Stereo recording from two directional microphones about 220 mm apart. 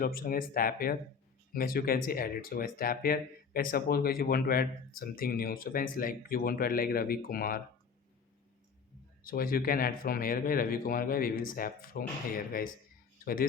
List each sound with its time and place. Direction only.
0.0 s speech: 40° left (ahead or behind)
9.2 s speech: 40° left (ahead or behind)